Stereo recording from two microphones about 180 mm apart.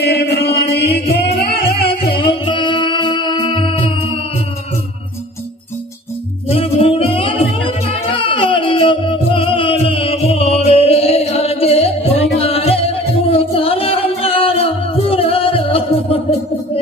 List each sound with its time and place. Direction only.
0.0 s chant: 65° left (ahead or behind)
1.8 s music: 30° left (ahead or behind)
6.5 s music: 30° left (ahead or behind)